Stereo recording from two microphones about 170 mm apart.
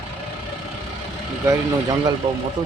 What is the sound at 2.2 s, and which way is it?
Speech, 35° right (ahead or behind).